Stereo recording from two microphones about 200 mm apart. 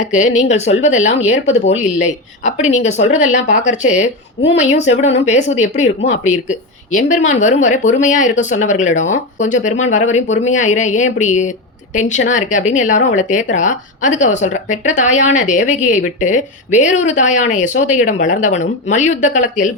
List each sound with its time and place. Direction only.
0.0 s speech: 35° left (ahead or behind)